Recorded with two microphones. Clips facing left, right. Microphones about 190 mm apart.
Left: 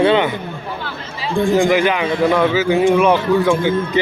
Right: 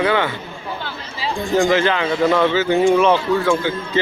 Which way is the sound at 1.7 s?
15° left (ahead or behind).